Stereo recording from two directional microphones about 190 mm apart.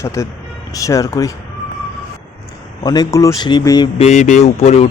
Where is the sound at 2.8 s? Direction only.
20° left (ahead or behind).